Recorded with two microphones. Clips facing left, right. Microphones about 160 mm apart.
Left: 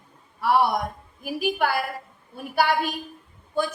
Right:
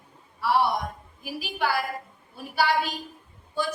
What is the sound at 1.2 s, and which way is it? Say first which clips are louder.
Speech: left 6 dB; 50° left (ahead or behind).